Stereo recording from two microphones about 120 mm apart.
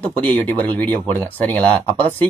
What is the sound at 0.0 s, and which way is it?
Speech, 15° left (ahead or behind).